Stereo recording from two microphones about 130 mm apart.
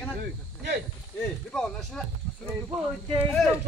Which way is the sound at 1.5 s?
5° left (ahead or behind).